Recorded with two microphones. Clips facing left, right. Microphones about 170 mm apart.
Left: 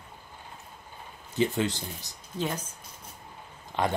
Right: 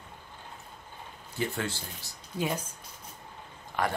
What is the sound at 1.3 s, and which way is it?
Speech, 20° left (ahead or behind).